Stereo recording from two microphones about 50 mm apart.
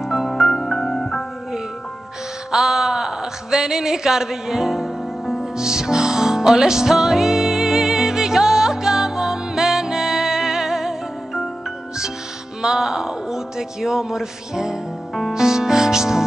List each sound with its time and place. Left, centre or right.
0.0 s music: centre
2.5 s a sound: centre
12.6 s a man's voice: centre
15.1 s music: centre